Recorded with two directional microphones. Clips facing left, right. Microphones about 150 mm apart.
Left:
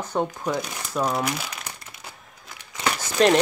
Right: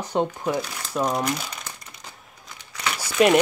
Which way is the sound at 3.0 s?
10° right (ahead or behind).